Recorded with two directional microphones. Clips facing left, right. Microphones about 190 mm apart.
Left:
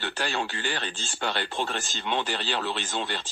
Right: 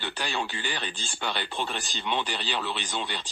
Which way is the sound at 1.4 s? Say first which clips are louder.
Left 2 dB; 45° left (ahead or behind).